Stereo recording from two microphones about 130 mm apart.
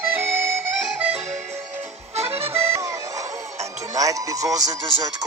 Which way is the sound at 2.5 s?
20° right (ahead or behind).